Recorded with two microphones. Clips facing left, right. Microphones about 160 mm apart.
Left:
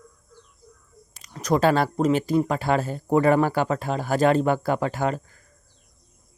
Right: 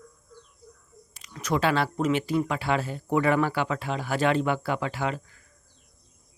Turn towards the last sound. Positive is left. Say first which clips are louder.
# left 4 dB
turn(degrees=45)  # may be behind; listen again after turning